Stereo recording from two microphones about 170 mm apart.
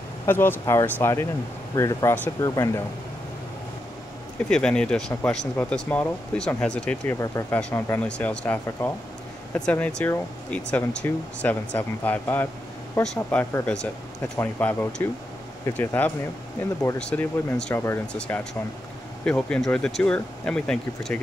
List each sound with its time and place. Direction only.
0.3 s speech: 10° left (ahead or behind)
4.5 s speech: 5° left (ahead or behind)